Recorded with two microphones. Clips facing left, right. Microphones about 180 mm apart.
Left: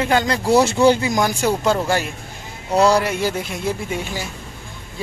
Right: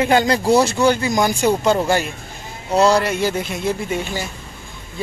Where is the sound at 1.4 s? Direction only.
5° right (ahead or behind).